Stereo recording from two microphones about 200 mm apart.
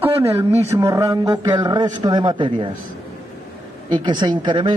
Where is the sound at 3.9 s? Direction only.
20° right (ahead or behind).